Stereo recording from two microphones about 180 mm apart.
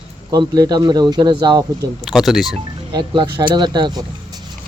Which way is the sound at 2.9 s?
25° right (ahead or behind).